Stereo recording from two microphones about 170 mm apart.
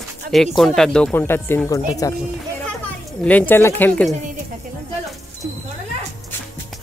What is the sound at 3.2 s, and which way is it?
Speech, 10° left (ahead or behind).